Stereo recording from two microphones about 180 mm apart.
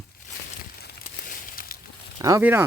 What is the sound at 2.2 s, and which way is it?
Speech, 15° right (ahead or behind).